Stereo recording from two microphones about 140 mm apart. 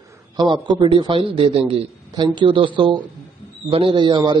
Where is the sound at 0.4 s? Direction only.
30° right (ahead or behind).